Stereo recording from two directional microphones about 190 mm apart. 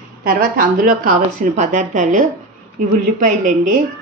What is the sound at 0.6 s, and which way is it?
A woman's voice, 45° right (ahead or behind).